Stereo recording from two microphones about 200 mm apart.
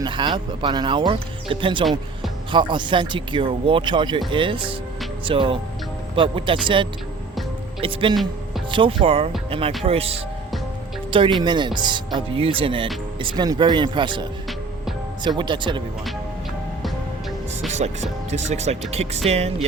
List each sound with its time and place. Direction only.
0.0 s speech: 25° right (ahead or behind)
8.1 s music: centre (ahead or behind)
8.7 s speech: 25° right (ahead or behind)
17.7 s speech: 35° right (ahead or behind)